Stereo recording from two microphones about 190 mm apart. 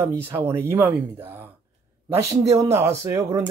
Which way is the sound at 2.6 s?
15° right (ahead or behind).